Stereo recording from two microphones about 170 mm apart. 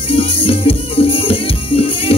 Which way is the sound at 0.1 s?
35° left (ahead or behind).